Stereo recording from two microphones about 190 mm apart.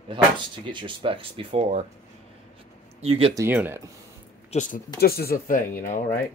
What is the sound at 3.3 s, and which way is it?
Speech, 10° right (ahead or behind).